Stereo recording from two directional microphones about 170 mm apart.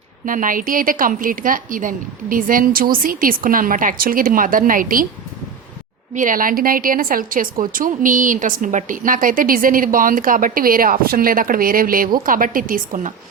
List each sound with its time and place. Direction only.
0.3 s a woman's voice: 50° right (ahead or behind)
6.1 s a woman's voice: 50° right (ahead or behind)